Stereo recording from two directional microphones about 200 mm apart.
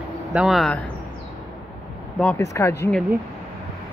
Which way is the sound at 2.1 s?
5° left (ahead or behind).